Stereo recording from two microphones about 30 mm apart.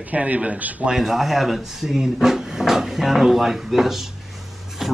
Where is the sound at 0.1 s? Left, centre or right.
Right.